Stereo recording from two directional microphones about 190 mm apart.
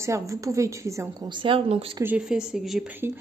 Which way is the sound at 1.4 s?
30° right (ahead or behind).